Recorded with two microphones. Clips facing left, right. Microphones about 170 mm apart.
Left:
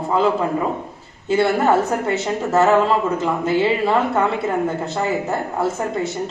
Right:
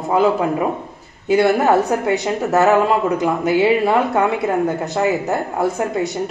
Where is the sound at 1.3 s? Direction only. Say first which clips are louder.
Right 2 dB; 15° right (ahead or behind).